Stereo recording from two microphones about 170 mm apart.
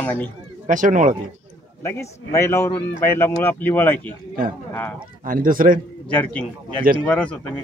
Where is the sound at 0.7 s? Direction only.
50° right (ahead or behind).